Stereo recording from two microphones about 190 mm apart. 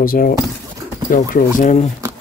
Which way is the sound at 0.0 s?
50° left (ahead or behind).